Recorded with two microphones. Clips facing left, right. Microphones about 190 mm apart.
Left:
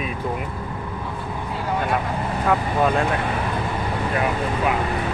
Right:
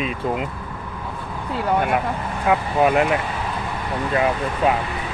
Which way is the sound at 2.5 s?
15° right (ahead or behind).